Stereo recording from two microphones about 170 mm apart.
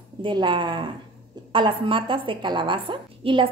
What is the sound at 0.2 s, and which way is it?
A woman's voice, 25° right (ahead or behind).